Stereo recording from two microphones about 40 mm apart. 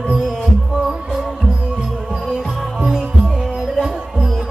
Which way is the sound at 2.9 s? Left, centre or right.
Centre.